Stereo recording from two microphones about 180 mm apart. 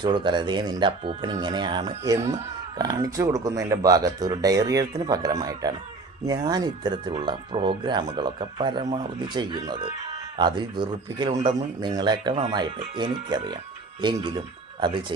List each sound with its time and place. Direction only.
0.0 s speech: 25° right (ahead or behind)
2.2 s speech: 35° right (ahead or behind)
2.7 s speech: 20° right (ahead or behind)